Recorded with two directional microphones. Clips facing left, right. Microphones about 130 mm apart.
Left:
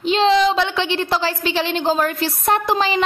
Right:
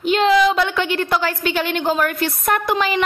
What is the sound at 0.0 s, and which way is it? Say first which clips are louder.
A woman's voice: even; 30° left (ahead or behind).